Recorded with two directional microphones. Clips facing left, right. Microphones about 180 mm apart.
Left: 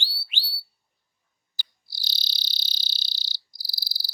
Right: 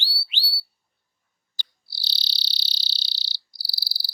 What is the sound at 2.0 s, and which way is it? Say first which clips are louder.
Cricket: right 1 dB; 45° left (ahead or behind).